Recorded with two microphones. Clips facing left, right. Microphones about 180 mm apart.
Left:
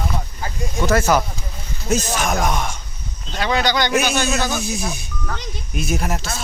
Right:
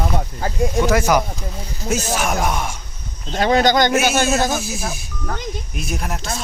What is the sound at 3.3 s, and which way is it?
Speech, 45° right (ahead or behind).